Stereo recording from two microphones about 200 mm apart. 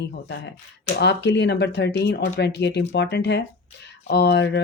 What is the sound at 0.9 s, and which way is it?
Speech, 60° left (ahead or behind).